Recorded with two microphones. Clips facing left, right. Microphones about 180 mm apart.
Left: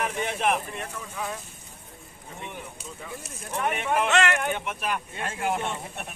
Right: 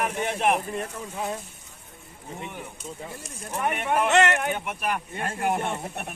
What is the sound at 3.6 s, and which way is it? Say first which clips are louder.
Speech: right 1 dB; 10° right (ahead or behind).